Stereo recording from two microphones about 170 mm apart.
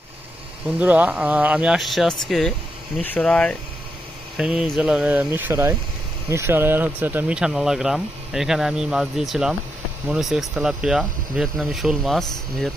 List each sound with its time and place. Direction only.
0.7 s speech: 10° right (ahead or behind)